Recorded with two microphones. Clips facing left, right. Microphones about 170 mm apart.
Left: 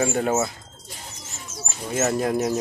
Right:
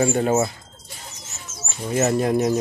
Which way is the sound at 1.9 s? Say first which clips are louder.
Right 3 dB; centre (ahead or behind).